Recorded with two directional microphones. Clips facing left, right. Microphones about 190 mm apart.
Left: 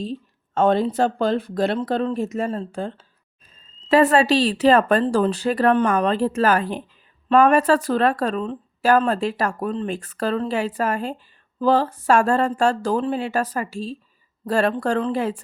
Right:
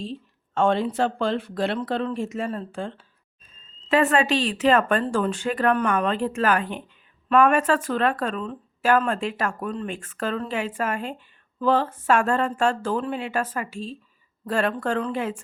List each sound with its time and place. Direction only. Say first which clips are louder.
0.0 s a woman's voice: left 4 dB; 40° left (ahead or behind)